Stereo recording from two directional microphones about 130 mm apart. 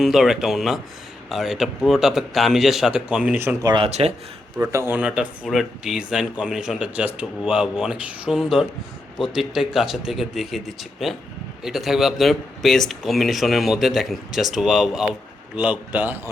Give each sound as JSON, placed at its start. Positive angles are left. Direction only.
{"t": 0.0, "sound": "speech", "side_deg": 0}
{"t": 3.6, "sound": "speech", "side_deg": -35}
{"t": 3.8, "sound": "a man's voice", "side_deg": -55}
{"t": 4.5, "sound": "speech", "side_deg": -15}